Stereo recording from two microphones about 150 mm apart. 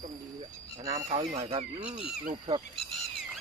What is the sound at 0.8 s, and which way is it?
Fowl, 25° right (ahead or behind).